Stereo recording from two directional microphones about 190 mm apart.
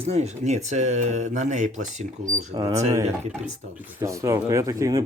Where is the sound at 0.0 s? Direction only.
35° right (ahead or behind).